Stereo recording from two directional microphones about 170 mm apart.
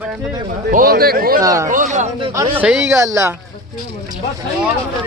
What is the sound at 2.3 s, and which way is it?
Speech, 20° right (ahead or behind).